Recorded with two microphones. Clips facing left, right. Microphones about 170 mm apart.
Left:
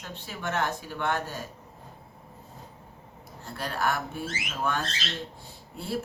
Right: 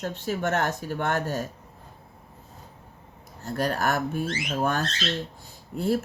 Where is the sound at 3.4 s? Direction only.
45° right (ahead or behind).